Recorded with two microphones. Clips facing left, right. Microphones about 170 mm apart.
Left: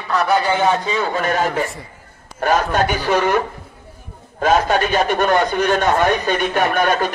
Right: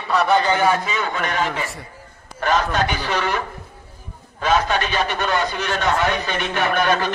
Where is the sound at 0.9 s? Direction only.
35° left (ahead or behind).